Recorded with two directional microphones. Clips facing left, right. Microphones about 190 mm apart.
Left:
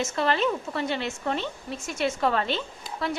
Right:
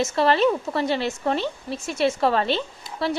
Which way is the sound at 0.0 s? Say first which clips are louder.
Right 5 dB; 35° right (ahead or behind).